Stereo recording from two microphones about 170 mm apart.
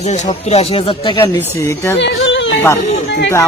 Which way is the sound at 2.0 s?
90° left.